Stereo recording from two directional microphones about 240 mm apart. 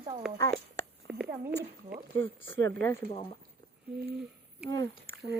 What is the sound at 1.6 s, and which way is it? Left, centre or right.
Speech, right.